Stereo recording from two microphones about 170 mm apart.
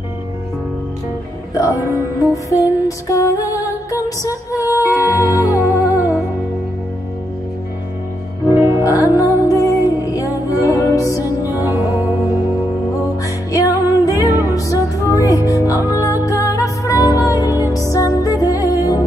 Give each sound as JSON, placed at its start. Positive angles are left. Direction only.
{"t": 1.6, "sound": "music", "side_deg": 20}
{"t": 8.5, "sound": "music", "side_deg": -15}
{"t": 8.8, "sound": "music", "side_deg": 20}
{"t": 11.6, "sound": "music", "side_deg": -15}
{"t": 13.2, "sound": "music", "side_deg": 20}